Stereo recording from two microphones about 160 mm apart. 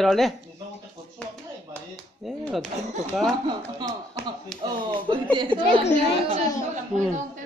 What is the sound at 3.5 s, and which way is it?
Speech, 25° right (ahead or behind).